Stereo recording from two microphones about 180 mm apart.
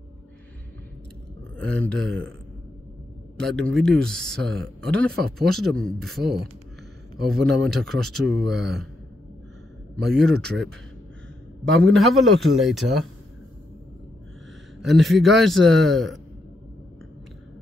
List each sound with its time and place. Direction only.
1.6 s speech: 5° left (ahead or behind)
3.3 s speech: 5° left (ahead or behind)
10.0 s speech: centre (ahead or behind)
11.9 s speech: centre (ahead or behind)
14.8 s speech: centre (ahead or behind)